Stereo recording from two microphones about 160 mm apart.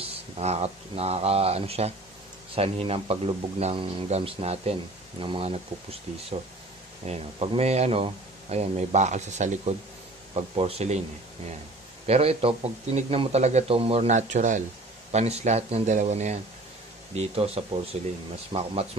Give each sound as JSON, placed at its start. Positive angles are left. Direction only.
{"t": 0.0, "sound": "speech", "side_deg": -40}
{"t": 7.1, "sound": "speech", "side_deg": -40}
{"t": 12.1, "sound": "speech", "side_deg": -40}